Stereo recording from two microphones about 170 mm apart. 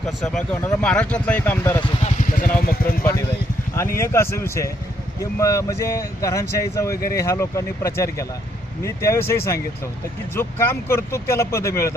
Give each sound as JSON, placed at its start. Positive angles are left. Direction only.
{"t": 0.0, "sound": "speech", "side_deg": 0}
{"t": 2.0, "sound": "vehicle", "side_deg": 45}
{"t": 3.0, "sound": "speech", "side_deg": 15}